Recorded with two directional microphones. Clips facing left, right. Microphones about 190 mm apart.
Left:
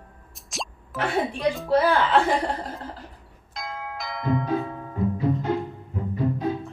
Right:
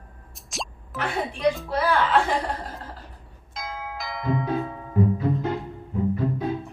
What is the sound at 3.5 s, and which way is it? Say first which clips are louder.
Music: even; centre (ahead or behind).